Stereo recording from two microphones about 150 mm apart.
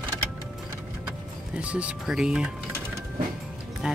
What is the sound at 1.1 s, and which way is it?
Music, 5° right (ahead or behind).